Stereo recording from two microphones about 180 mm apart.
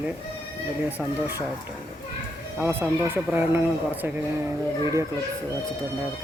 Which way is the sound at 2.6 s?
10° right (ahead or behind).